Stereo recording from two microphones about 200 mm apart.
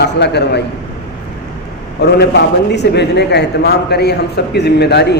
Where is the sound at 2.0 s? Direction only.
55° left (ahead or behind).